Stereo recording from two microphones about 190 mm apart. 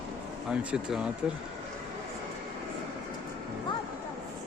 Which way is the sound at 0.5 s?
5° right (ahead or behind).